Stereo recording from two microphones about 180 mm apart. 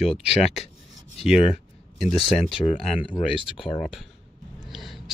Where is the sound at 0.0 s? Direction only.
35° left (ahead or behind).